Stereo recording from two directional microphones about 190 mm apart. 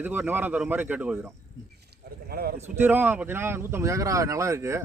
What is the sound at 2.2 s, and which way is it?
Speech, 55° right (ahead or behind).